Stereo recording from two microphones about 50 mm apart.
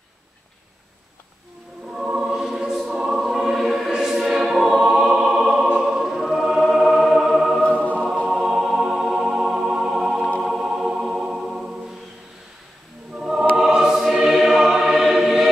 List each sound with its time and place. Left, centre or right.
1.9 s choir: centre
5.8 s music: centre
7.6 s music: left
8.3 s music: centre
13.2 s music: centre
13.6 s choir: centre